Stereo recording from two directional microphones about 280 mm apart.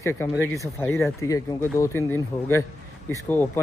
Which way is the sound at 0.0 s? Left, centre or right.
Centre.